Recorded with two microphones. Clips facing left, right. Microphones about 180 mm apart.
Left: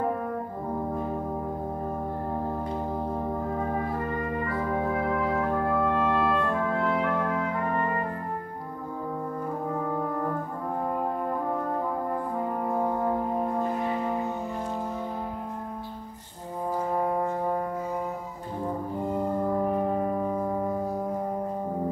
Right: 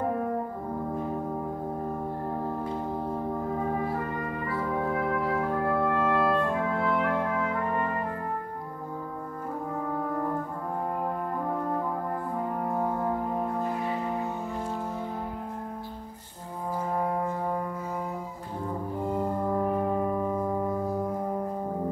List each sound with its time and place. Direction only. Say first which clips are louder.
5.9 s music: even; 20° left (ahead or behind)